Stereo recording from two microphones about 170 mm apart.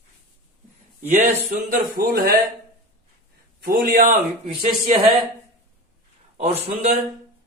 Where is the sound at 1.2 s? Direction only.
55° right (ahead or behind).